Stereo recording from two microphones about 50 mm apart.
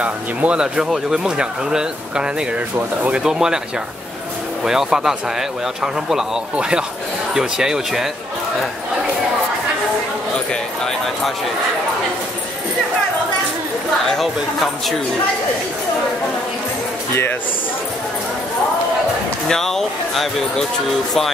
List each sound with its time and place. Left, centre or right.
0.0 s speech: right
3.3 s speech: centre
4.6 s speech: centre
14.1 s speech: centre
19.5 s speech: centre